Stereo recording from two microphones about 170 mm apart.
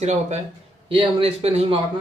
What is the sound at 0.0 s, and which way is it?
A man's voice, 40° right (ahead or behind).